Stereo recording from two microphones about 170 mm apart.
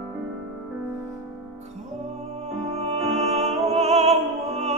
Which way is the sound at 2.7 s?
40° right (ahead or behind).